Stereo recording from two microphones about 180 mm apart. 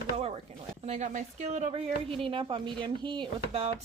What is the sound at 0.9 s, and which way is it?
Speech, 40° right (ahead or behind).